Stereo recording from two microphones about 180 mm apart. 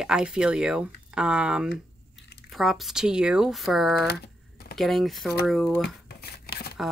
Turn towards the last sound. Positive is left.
turn(degrees=60)  # may be behind; listen again after turning